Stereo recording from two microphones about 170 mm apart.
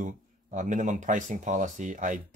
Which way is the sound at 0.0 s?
45° right (ahead or behind).